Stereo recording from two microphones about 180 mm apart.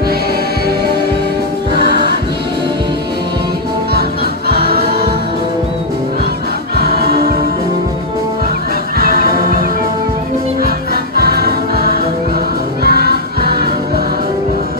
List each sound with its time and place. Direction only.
1.8 s music: 60° left (ahead or behind)
4.5 s music: 60° right (ahead or behind)
6.8 s music: 60° right (ahead or behind)
9.2 s music: 55° right (ahead or behind)
11.2 s music: 60° right (ahead or behind)